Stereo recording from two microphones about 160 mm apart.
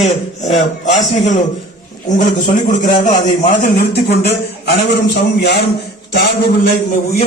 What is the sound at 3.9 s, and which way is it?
A man's voice, 90° left.